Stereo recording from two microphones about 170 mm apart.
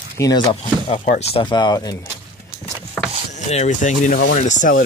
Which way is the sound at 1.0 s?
40° left (ahead or behind).